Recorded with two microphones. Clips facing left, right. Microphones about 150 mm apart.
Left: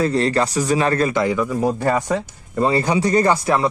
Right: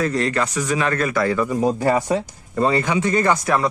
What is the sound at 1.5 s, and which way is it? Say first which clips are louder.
Speech: right 1 dB; 15° right (ahead or behind).